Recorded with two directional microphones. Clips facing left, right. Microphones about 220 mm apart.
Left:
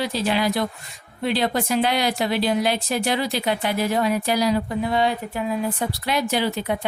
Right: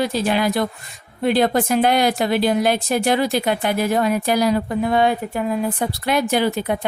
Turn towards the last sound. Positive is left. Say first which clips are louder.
# right 4 dB
turn(degrees=-50)  # may be behind; listen again after turning